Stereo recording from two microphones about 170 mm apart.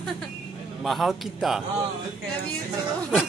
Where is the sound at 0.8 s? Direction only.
Centre (ahead or behind).